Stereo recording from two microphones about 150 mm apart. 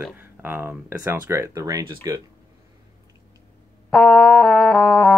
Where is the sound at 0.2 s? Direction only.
15° right (ahead or behind).